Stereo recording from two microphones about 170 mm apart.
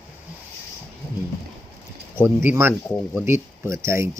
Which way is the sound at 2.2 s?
10° right (ahead or behind).